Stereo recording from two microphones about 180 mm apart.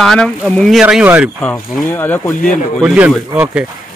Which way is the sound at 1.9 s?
10° left (ahead or behind).